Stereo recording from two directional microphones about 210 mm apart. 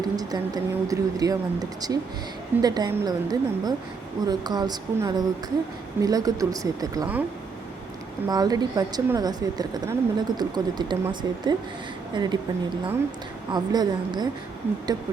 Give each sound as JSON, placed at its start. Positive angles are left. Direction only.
{"t": 0.0, "sound": "a woman's voice", "side_deg": -20}
{"t": 8.3, "sound": "speech", "side_deg": -20}